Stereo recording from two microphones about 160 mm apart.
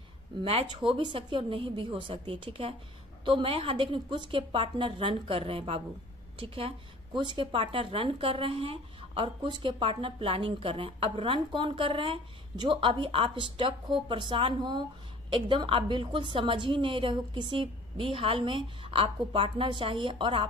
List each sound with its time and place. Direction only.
0.4 s speech: 35° right (ahead or behind)